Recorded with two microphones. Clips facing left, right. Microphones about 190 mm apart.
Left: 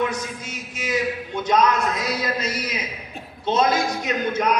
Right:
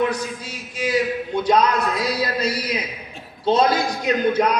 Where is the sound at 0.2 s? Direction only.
35° right (ahead or behind).